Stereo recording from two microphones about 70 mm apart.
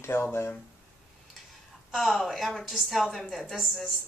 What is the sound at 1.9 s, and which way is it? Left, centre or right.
A woman's voice, centre.